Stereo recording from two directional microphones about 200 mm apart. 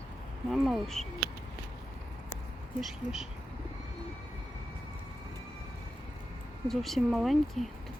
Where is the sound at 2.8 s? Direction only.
Centre (ahead or behind).